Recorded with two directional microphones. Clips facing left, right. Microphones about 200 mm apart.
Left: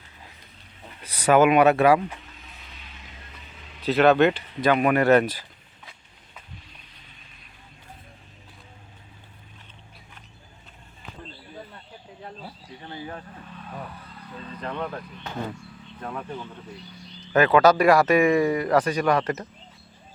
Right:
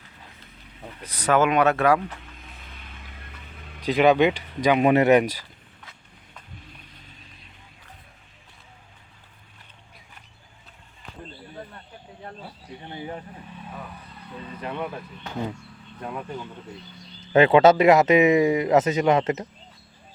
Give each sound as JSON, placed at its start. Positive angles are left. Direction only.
{"t": 1.0, "sound": "speech", "side_deg": 10}
{"t": 2.7, "sound": "vehicle", "side_deg": -55}
{"t": 3.8, "sound": "speech", "side_deg": -15}
{"t": 12.9, "sound": "speech", "side_deg": -20}
{"t": 17.3, "sound": "speech", "side_deg": -25}